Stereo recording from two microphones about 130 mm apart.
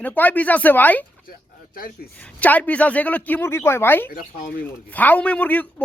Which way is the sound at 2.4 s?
10° left (ahead or behind).